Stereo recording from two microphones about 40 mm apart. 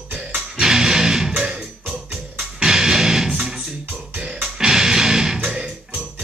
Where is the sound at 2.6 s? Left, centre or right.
Centre.